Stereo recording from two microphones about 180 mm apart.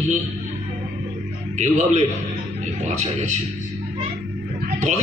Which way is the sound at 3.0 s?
40° right (ahead or behind).